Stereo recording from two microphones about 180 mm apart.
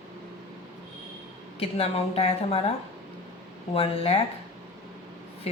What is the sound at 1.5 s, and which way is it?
A woman's voice, 35° left (ahead or behind).